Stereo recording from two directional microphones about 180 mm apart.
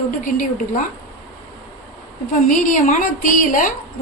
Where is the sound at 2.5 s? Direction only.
45° left (ahead or behind).